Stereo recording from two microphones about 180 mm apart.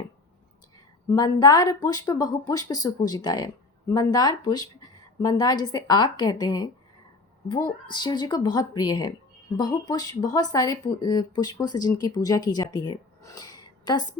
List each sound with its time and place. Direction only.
1.1 s speech: 20° left (ahead or behind)
7.9 s speech: 25° left (ahead or behind)